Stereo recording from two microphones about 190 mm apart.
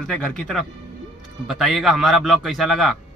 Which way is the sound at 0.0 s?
5° left (ahead or behind).